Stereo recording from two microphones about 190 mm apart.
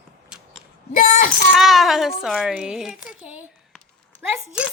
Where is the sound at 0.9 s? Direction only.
45° left (ahead or behind).